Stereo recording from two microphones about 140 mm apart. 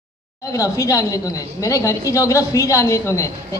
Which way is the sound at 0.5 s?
25° left (ahead or behind).